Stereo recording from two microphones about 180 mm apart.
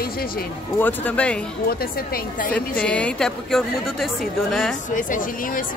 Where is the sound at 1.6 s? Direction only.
55° left (ahead or behind).